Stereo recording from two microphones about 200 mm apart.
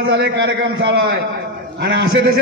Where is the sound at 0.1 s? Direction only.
55° right (ahead or behind).